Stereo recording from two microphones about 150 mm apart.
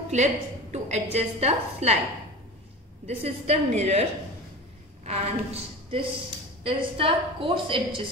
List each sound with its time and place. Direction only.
0.1 s a woman's voice: 50° right (ahead or behind)
3.1 s a woman's voice: 45° right (ahead or behind)
5.0 s a woman's voice: 45° right (ahead or behind)